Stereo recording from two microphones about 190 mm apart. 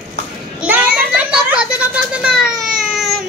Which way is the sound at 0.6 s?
10° right (ahead or behind).